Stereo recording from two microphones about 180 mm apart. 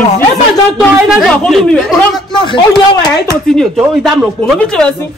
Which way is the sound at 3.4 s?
Centre (ahead or behind).